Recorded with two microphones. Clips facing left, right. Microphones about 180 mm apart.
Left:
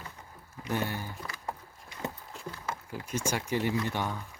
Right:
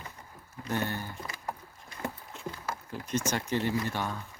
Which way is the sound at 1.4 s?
20° left (ahead or behind).